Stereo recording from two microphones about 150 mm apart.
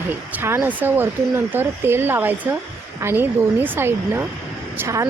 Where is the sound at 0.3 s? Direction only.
15° right (ahead or behind).